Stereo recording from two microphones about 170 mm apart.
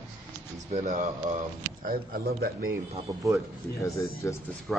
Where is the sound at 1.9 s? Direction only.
60° right (ahead or behind).